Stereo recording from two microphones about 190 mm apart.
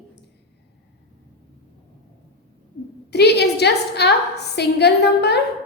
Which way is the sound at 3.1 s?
60° left (ahead or behind).